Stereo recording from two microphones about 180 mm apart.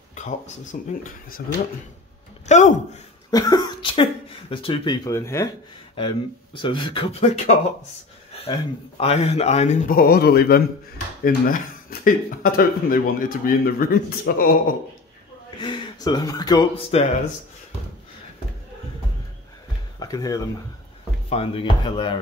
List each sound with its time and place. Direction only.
0.1 s speech: 45° left (ahead or behind)
2.4 s a sound: 40° left (ahead or behind)
3.3 s speech: 20° left (ahead or behind)
5.9 s speech: 30° left (ahead or behind)
8.3 s a sound: 35° left (ahead or behind)
9.0 s speech: 35° left (ahead or behind); by 14.6 s 55° left (ahead or behind)
15.6 s speech: 25° left (ahead or behind)
20.0 s speech: 20° left (ahead or behind)
21.3 s speech: 30° left (ahead or behind)